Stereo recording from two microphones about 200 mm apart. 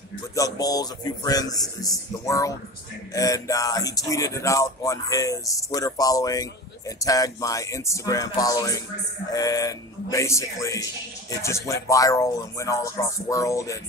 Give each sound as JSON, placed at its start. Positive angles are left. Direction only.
{"t": 0.4, "sound": "a man's voice", "side_deg": 20}